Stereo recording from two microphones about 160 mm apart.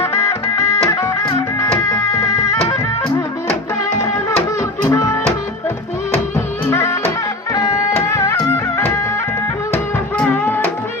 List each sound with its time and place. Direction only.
0.0 s music: 20° left (ahead or behind)
4.9 s music: 20° left (ahead or behind)
6.7 s music: 15° left (ahead or behind)